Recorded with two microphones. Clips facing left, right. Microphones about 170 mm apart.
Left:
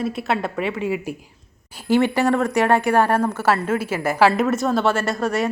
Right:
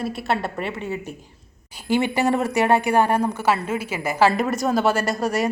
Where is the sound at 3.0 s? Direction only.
15° right (ahead or behind).